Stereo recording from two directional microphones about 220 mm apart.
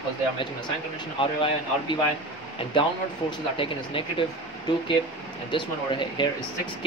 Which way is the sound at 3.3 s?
25° left (ahead or behind).